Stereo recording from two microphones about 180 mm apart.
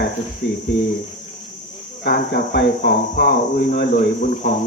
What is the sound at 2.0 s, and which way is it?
Speech, 65° left (ahead or behind).